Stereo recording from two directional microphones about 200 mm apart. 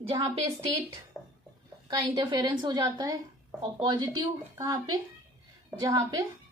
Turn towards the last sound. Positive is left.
turn(degrees=-15)  # may be behind; listen again after turning